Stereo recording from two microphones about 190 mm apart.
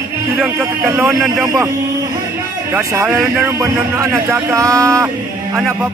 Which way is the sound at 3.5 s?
15° right (ahead or behind).